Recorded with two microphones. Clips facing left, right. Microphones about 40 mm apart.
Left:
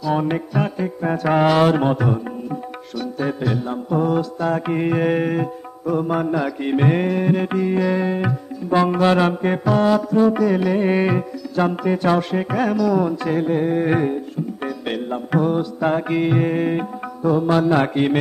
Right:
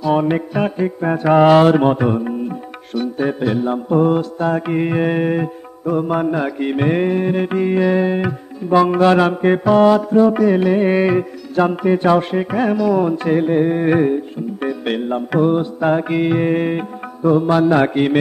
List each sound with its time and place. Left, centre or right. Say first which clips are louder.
0.0 s music: right 4 dB; right
4.6 s music: right 1 dB; centre
5.9 s music: right 3 dB; right
6.7 s music: right 1 dB; centre
12.4 s music: right 3 dB; centre
12.6 s music: right 3 dB; right
15.8 s music: right 2 dB; centre
17.5 s music: right 3 dB; centre